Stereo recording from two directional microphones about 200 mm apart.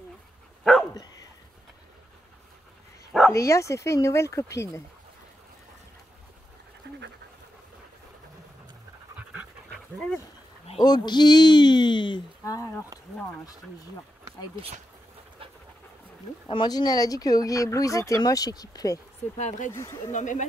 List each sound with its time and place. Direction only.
0.7 s dog: centre (ahead or behind)
3.1 s bow-wow: centre (ahead or behind)
3.3 s speech: 15° left (ahead or behind)
6.8 s dog: 60° right (ahead or behind)
9.3 s dog: 5° right (ahead or behind)
9.9 s dog: 5° left (ahead or behind)
10.7 s speech: 20° left (ahead or behind)
16.4 s speech: 20° left (ahead or behind)
19.3 s speech: 35° left (ahead or behind)
19.7 s speech: 15° left (ahead or behind)
20.1 s speech: 40° left (ahead or behind)